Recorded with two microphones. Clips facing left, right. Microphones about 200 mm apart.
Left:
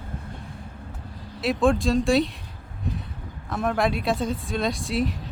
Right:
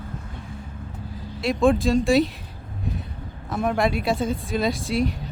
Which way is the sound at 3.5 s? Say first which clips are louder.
Right 1 dB; centre (ahead or behind).